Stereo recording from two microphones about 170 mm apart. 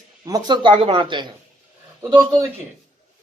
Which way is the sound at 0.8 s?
30° right (ahead or behind).